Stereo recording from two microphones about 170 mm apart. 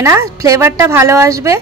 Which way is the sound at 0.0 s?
20° right (ahead or behind).